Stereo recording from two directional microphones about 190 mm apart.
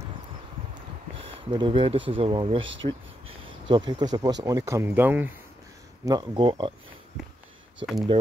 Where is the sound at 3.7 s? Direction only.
25° right (ahead or behind).